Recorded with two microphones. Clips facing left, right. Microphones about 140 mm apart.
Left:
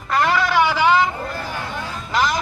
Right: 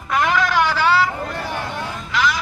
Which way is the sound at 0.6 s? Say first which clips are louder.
Left 3 dB; 15° left (ahead or behind).